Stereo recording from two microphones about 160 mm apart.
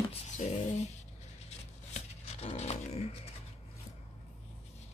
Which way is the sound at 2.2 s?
40° left (ahead or behind).